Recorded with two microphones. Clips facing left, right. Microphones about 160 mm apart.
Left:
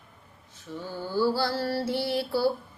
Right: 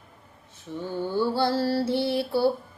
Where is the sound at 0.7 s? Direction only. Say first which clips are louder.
Right 2 dB; 20° right (ahead or behind).